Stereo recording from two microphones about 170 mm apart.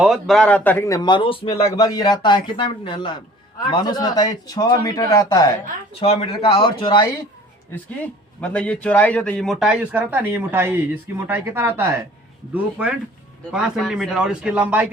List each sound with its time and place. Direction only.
0.0 s a man's voice: centre (ahead or behind); by 5.5 s 20° left (ahead or behind)
5.9 s speech: 35° left (ahead or behind)
7.9 s speech: 10° left (ahead or behind); by 11.9 s 15° right (ahead or behind)
13.5 s speech: 5° right (ahead or behind)